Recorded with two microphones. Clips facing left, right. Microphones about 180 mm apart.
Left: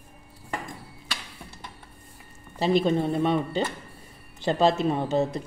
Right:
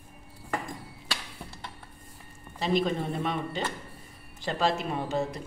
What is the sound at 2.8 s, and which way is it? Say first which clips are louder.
Speech: left 5 dB; 30° left (ahead or behind).